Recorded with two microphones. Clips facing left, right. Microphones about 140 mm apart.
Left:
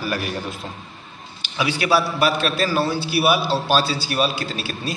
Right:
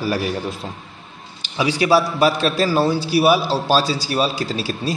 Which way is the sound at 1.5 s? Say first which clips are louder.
Right 3 dB; 35° right (ahead or behind).